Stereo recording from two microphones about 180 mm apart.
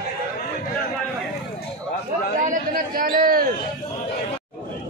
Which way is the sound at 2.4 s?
50° right (ahead or behind).